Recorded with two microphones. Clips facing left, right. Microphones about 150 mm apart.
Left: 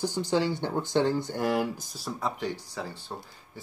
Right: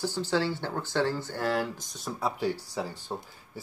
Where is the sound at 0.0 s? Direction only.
15° left (ahead or behind).